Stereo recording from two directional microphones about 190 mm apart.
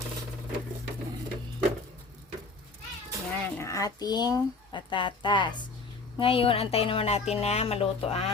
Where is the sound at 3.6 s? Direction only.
15° left (ahead or behind).